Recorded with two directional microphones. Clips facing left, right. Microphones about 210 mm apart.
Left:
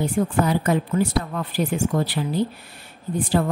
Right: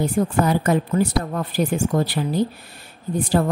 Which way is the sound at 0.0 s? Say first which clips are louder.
Right 2 dB; 45° right (ahead or behind).